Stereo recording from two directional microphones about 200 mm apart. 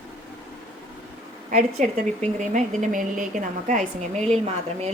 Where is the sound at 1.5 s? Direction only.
35° right (ahead or behind).